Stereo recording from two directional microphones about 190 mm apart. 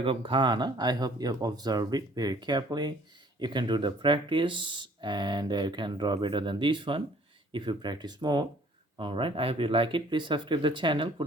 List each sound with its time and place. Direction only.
0.0 s speech: 25° right (ahead or behind)